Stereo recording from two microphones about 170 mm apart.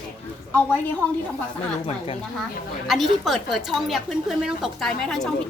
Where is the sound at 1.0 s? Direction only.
10° left (ahead or behind).